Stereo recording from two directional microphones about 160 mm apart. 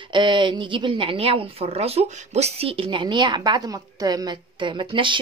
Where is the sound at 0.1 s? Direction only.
30° right (ahead or behind).